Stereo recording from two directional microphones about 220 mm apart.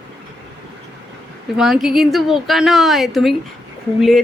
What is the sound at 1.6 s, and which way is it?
Speech, centre (ahead or behind).